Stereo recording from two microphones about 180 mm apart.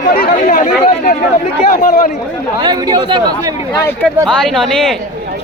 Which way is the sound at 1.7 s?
50° left (ahead or behind).